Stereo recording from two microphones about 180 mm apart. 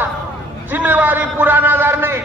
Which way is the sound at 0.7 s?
10° right (ahead or behind).